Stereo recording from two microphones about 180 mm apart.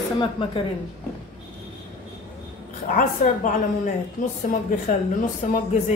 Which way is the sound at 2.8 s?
45° left (ahead or behind).